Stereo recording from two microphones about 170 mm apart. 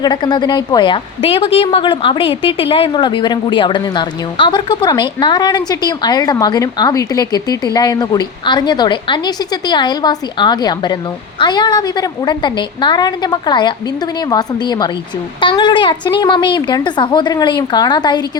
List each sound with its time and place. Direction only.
0.0 s a woman's voice: 25° left (ahead or behind)